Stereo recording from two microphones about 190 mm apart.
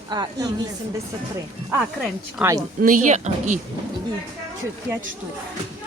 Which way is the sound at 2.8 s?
45° right (ahead or behind).